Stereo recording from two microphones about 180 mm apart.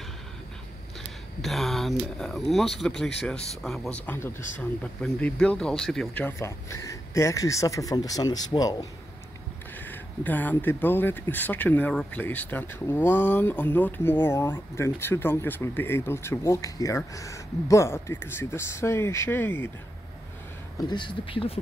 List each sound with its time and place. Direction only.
1.4 s speech: centre (ahead or behind); by 8.7 s 20° left (ahead or behind)
9.8 s speech: 10° left (ahead or behind)
20.9 s speech: 25° left (ahead or behind)